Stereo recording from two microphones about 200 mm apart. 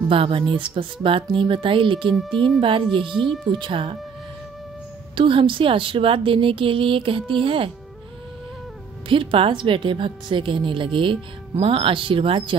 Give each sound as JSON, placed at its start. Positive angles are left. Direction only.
{"t": 0.1, "sound": "speech", "side_deg": -25}
{"t": 2.1, "sound": "speech", "side_deg": 0}
{"t": 2.6, "sound": "speech", "side_deg": -25}
{"t": 5.1, "sound": "speech", "side_deg": -25}
{"t": 9.1, "sound": "speech", "side_deg": -25}